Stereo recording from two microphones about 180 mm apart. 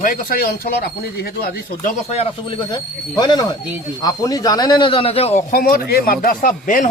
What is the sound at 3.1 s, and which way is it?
A man's voice, 25° left (ahead or behind).